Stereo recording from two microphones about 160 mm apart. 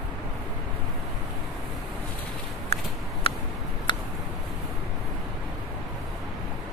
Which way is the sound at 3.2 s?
35° left (ahead or behind).